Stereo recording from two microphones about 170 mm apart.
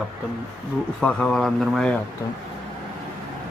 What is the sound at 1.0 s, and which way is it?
Speech, 5° left (ahead or behind).